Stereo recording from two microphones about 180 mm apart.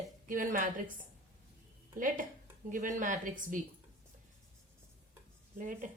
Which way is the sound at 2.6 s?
45° right (ahead or behind).